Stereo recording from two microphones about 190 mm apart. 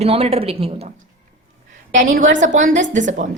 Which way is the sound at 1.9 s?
45° right (ahead or behind).